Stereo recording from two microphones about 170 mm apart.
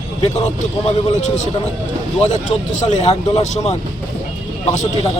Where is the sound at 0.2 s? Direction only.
40° left (ahead or behind).